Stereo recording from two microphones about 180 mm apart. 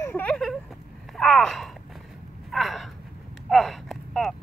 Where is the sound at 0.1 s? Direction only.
5° left (ahead or behind).